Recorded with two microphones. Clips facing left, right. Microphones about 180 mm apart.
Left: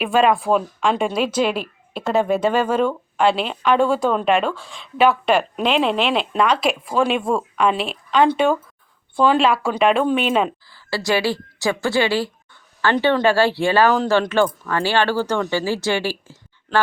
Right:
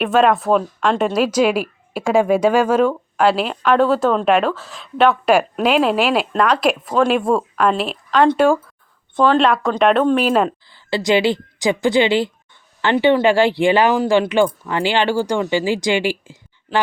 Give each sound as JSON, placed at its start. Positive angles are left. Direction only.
{"t": 0.0, "sound": "a woman's voice", "side_deg": 0}
{"t": 10.7, "sound": "a woman's voice", "side_deg": -20}